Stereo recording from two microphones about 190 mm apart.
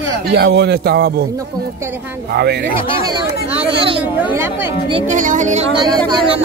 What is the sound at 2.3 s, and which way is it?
Speech, 60° right (ahead or behind).